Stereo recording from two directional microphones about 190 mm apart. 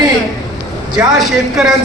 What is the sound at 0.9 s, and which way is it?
Speech, centre (ahead or behind).